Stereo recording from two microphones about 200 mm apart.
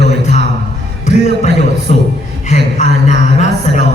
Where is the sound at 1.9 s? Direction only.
35° left (ahead or behind).